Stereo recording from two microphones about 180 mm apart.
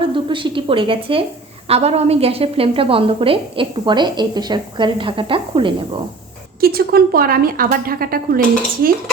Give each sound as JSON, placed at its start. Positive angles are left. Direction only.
{"t": 0.0, "sound": "a woman's voice", "side_deg": -30}
{"t": 6.6, "sound": "a woman's voice", "side_deg": -55}